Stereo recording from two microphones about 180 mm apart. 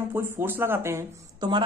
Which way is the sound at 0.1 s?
10° right (ahead or behind).